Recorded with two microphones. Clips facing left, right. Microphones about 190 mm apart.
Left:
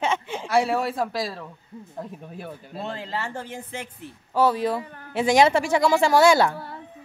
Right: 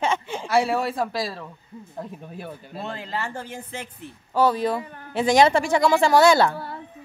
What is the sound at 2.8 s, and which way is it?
Speech, 25° left (ahead or behind).